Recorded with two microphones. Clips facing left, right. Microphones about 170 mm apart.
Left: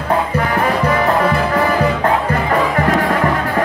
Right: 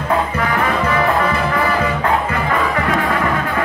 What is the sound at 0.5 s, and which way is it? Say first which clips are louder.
Music: left 3 dB; 35° left (ahead or behind).